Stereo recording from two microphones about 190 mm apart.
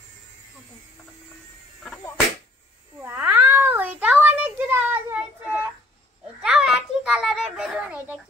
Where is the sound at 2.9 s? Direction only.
10° right (ahead or behind).